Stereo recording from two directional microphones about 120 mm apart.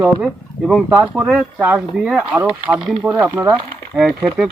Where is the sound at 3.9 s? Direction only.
5° left (ahead or behind).